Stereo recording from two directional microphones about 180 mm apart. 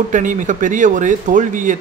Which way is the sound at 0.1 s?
45° right (ahead or behind).